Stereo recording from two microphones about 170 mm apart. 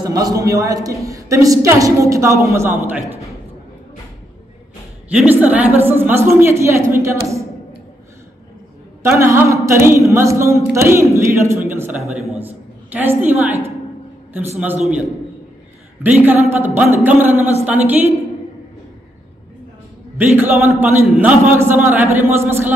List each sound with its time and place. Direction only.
0.0 s a man's voice: 20° right (ahead or behind)
3.0 s a man's voice: 20° left (ahead or behind)
5.1 s a man's voice: 10° right (ahead or behind)
9.0 s a man's voice: 15° right (ahead or behind)
14.9 s a man's voice: 10° right (ahead or behind)
20.2 s a man's voice: 15° right (ahead or behind)